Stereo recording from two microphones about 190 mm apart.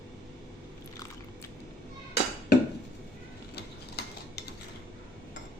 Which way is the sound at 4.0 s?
60° left (ahead or behind).